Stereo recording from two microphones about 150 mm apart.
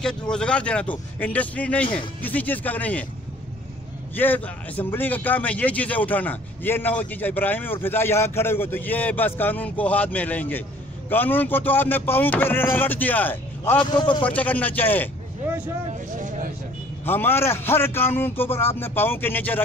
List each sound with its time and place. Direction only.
0.0 s speech: 5° left (ahead or behind)
4.1 s speech: 10° left (ahead or behind)
16.2 s vehicle: 60° right (ahead or behind)
17.0 s speech: 15° left (ahead or behind)